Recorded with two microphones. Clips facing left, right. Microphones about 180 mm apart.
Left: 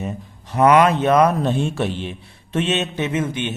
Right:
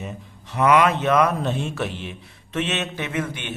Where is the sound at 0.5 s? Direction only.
40° left (ahead or behind).